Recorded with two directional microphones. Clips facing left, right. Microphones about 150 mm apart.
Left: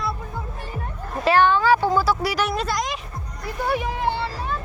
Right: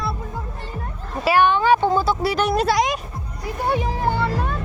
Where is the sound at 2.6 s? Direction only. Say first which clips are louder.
Right 6 dB; 70° right (ahead or behind).